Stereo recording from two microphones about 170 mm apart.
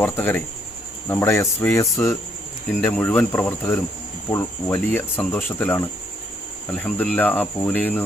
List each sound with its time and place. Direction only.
0.0 s speech: 10° left (ahead or behind)